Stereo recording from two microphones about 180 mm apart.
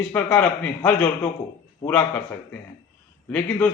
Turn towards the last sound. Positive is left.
turn(degrees=10)  # may be behind; listen again after turning